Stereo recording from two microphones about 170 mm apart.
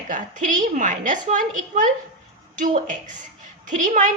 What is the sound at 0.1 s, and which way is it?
A woman's voice, 50° right (ahead or behind).